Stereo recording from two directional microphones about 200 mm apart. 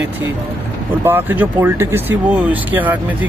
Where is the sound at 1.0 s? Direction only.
10° right (ahead or behind).